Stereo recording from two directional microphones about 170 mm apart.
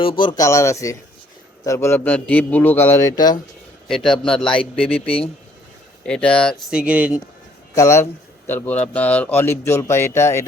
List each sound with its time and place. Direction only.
0.0 s a man's voice: 30° left (ahead or behind)
3.8 s speech: centre (ahead or behind)
4.9 s speech: 35° left (ahead or behind)
6.1 s speech: 5° left (ahead or behind)
7.8 s a man's voice: 15° left (ahead or behind)